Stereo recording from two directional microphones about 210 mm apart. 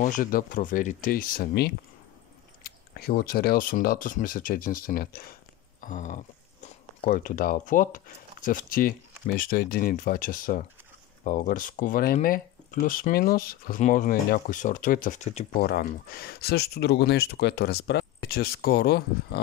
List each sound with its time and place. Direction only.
0.0 s speech: 40° left (ahead or behind)